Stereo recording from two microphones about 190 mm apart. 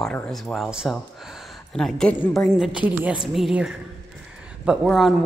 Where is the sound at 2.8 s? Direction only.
5° right (ahead or behind).